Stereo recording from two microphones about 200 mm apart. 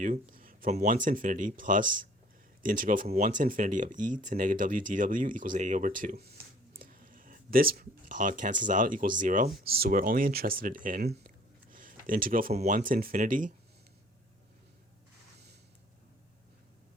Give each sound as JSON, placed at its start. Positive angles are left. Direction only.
{"t": 0.0, "sound": "speech", "side_deg": -40}